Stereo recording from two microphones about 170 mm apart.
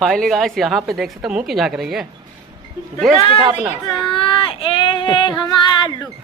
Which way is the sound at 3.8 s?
30° left (ahead or behind).